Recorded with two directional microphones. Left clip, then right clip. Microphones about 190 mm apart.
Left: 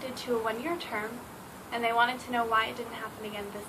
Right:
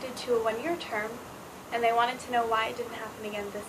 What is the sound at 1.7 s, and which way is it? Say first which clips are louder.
Speech: right 1 dB; 15° left (ahead or behind).